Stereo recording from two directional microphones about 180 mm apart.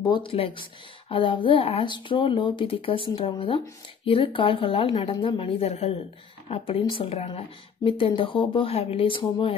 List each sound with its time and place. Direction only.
0.0 s a woman's voice: 25° left (ahead or behind)